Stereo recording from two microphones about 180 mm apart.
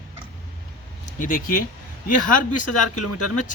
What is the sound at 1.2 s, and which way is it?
Speech, 50° left (ahead or behind).